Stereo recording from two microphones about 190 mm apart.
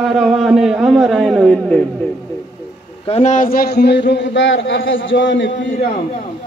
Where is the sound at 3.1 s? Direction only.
40° left (ahead or behind); by 5.7 s 75° left (ahead or behind).